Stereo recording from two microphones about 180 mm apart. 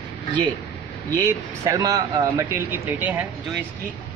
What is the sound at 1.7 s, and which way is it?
Speech, 20° right (ahead or behind).